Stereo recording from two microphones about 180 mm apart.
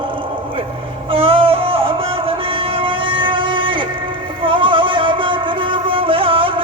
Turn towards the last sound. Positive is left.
turn(degrees=-30)  # may be behind; listen again after turning